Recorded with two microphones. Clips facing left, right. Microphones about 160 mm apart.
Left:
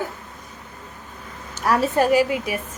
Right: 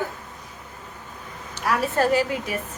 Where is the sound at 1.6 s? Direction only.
45° left (ahead or behind).